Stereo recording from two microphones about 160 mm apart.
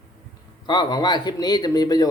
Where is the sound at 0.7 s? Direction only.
30° left (ahead or behind).